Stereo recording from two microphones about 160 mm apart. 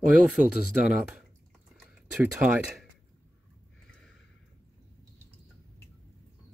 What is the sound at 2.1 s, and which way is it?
Speech, 10° right (ahead or behind).